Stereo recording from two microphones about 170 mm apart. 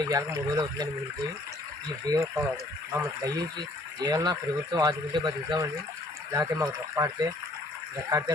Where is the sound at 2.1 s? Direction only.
20° right (ahead or behind).